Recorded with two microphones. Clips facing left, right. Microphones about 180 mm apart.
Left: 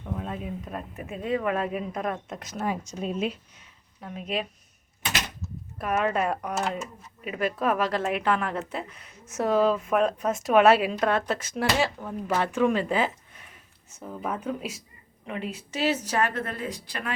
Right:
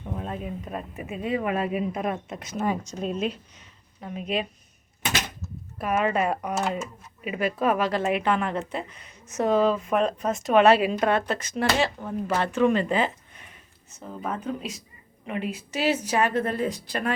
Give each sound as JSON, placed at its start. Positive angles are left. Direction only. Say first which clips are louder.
{"t": 0.0, "sound": "speech", "louder": "right 1 dB", "side_deg": 0}
{"t": 2.9, "sound": "speech", "louder": "right 1 dB", "side_deg": 5}
{"t": 5.8, "sound": "speech", "louder": "right 1 dB", "side_deg": 0}
{"t": 15.3, "sound": "speech", "louder": "right 3 dB", "side_deg": -5}
{"t": 16.0, "sound": "a woman's voice", "louder": "right 4 dB", "side_deg": -20}
{"t": 16.9, "sound": "speech", "louder": "right 5 dB", "side_deg": -40}